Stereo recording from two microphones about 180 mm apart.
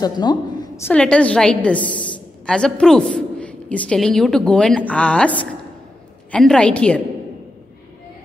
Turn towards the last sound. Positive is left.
turn(degrees=5)  # may be behind; listen again after turning